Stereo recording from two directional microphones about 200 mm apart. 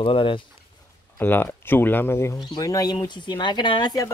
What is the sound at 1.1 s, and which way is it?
Speech, 10° left (ahead or behind).